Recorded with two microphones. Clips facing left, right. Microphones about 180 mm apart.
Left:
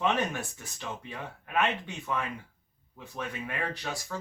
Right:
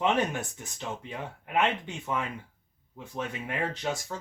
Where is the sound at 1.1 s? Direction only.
20° right (ahead or behind).